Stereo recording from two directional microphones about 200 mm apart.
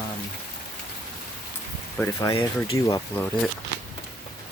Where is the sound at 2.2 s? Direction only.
20° left (ahead or behind).